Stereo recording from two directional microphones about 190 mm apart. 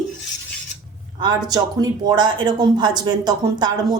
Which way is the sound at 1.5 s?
20° right (ahead or behind).